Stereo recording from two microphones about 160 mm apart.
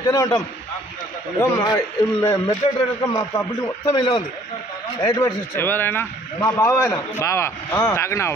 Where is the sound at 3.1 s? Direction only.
20° left (ahead or behind).